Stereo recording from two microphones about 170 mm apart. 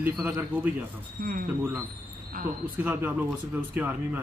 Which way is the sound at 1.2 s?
60° right (ahead or behind).